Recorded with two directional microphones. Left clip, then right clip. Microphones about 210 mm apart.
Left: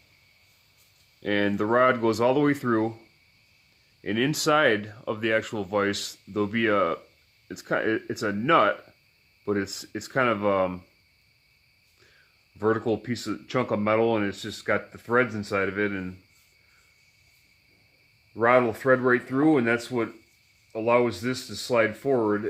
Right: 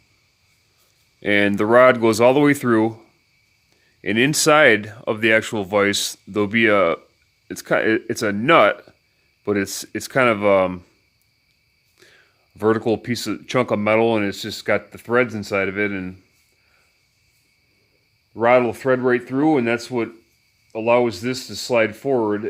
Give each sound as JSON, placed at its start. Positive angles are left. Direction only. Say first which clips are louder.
{"t": 1.2, "sound": "speech", "louder": "right 8 dB", "side_deg": -35}
{"t": 4.0, "sound": "speech", "louder": "right 8 dB", "side_deg": -40}
{"t": 12.5, "sound": "speech", "louder": "right 6 dB", "side_deg": -40}
{"t": 18.3, "sound": "speech", "louder": "right 5 dB", "side_deg": -40}